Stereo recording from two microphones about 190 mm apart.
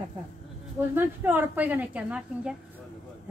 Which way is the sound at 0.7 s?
10° right (ahead or behind).